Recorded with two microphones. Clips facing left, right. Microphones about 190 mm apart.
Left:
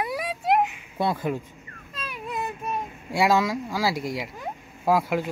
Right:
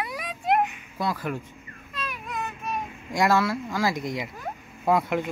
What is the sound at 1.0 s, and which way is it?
Speech, 25° left (ahead or behind).